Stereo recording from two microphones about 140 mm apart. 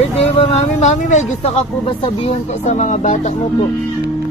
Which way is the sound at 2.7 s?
55° left (ahead or behind).